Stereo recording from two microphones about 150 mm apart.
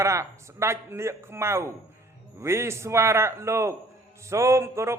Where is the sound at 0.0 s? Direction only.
20° right (ahead or behind).